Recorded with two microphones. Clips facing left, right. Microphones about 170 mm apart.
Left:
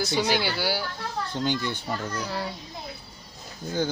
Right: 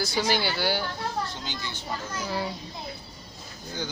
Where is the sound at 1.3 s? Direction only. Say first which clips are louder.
Left 9 dB; 55° left (ahead or behind).